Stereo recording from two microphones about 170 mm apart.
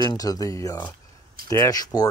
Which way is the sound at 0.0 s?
20° left (ahead or behind).